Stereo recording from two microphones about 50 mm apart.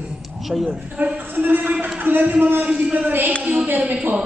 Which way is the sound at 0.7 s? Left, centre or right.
Right.